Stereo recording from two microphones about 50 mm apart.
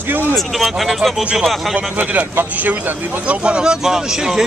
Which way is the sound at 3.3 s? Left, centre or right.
Right.